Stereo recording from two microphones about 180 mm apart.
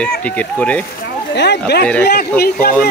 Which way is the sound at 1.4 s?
70° left (ahead or behind).